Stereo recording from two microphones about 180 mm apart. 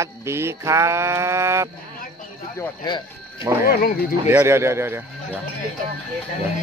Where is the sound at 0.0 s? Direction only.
15° right (ahead or behind).